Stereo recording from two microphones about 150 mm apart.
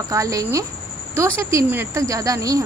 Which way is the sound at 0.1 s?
20° right (ahead or behind).